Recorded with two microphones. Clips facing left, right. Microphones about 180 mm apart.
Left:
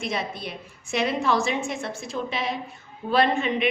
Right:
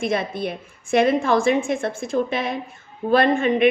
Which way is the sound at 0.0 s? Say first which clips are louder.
Right 7 dB; 55° right (ahead or behind).